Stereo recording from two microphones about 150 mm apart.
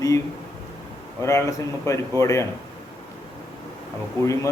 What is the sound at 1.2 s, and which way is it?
A man's voice, 20° left (ahead or behind).